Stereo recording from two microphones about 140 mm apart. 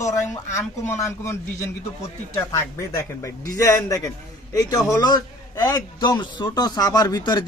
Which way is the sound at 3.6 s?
20° left (ahead or behind).